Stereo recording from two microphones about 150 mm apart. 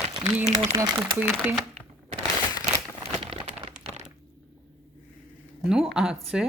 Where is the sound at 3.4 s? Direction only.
50° right (ahead or behind).